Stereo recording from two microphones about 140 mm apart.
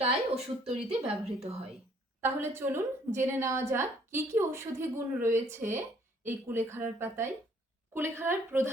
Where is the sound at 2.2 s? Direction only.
15° right (ahead or behind).